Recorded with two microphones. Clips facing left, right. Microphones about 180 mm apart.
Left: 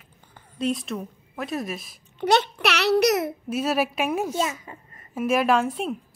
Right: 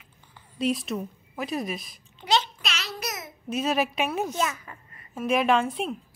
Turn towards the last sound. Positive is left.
turn(degrees=0)  # may be behind; listen again after turning